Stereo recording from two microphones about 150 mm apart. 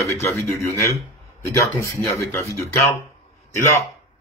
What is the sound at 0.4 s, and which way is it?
A man's voice, 20° left (ahead or behind).